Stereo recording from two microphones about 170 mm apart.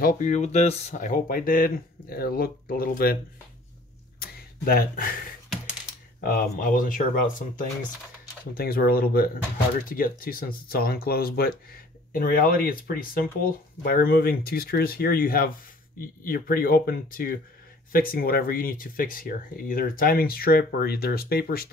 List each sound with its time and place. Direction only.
0.0 s speech: 50° left (ahead or behind)
4.2 s a sound: 60° left (ahead or behind)
6.2 s speech: 55° left (ahead or behind)